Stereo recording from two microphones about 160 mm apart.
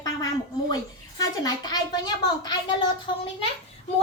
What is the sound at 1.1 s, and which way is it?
A woman's voice, 25° left (ahead or behind).